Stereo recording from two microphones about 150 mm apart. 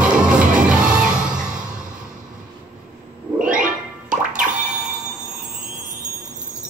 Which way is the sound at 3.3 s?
65° right (ahead or behind).